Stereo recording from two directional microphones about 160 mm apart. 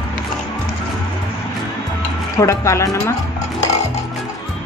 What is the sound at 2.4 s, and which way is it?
Speech, 20° left (ahead or behind).